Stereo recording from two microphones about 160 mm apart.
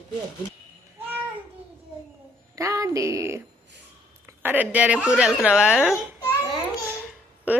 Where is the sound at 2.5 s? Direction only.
20° right (ahead or behind).